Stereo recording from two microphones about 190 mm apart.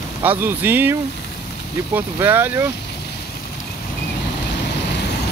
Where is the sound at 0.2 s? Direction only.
10° right (ahead or behind).